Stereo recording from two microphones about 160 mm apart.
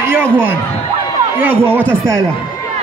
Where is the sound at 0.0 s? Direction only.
15° right (ahead or behind).